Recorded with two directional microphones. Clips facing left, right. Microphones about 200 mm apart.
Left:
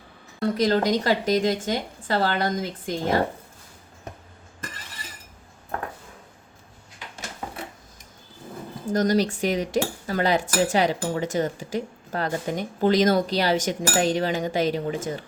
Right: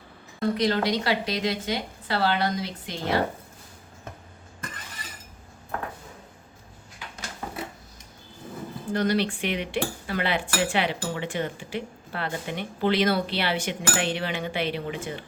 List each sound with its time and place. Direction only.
0.3 s a woman's voice: 40° left (ahead or behind)
8.9 s speech: 40° left (ahead or behind)